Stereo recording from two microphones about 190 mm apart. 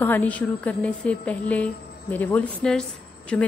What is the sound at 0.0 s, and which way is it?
A woman's voice, 10° left (ahead or behind).